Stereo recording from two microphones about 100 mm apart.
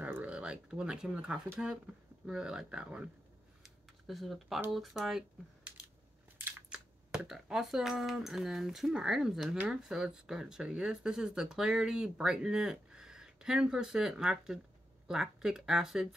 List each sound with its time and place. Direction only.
0.0 s speech: 15° right (ahead or behind)
4.1 s speech: centre (ahead or behind)
6.3 s a sound: 25° right (ahead or behind)
6.7 s speech: 5° right (ahead or behind)